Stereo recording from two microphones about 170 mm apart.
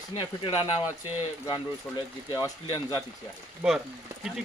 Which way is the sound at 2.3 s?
20° left (ahead or behind).